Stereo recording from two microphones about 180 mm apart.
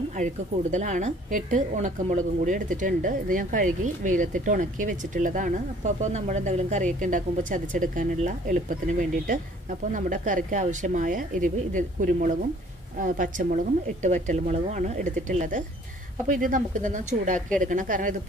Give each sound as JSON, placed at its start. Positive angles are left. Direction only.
{"t": 0.1, "sound": "a woman's voice", "side_deg": -45}